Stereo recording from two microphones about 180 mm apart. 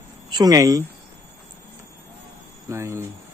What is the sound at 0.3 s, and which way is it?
Speech, 20° right (ahead or behind).